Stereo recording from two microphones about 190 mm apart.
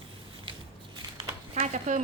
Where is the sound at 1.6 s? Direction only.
40° right (ahead or behind).